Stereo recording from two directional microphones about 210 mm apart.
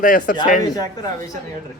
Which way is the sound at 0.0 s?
40° left (ahead or behind).